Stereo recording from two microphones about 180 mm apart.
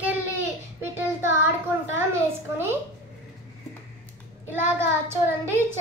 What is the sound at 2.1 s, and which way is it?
Speech, 10° right (ahead or behind).